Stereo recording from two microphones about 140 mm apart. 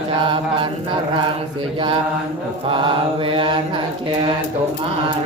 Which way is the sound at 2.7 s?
40° right (ahead or behind).